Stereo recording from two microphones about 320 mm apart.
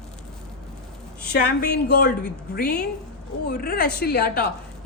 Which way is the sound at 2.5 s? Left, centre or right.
Left.